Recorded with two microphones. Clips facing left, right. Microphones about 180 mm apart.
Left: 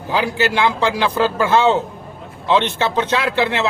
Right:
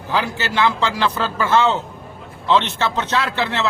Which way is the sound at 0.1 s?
15° left (ahead or behind).